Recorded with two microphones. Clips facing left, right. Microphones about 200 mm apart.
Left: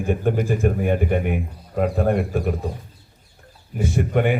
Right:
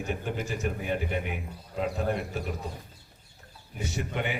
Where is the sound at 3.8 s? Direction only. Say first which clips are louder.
Left 12 dB; 55° left (ahead or behind).